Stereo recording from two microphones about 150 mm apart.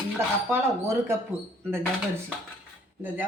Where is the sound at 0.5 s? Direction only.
15° right (ahead or behind).